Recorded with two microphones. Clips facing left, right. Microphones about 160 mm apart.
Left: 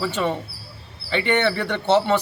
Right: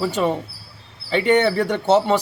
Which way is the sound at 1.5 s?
5° right (ahead or behind).